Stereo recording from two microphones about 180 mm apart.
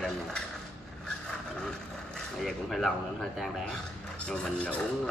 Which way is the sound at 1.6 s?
5° left (ahead or behind).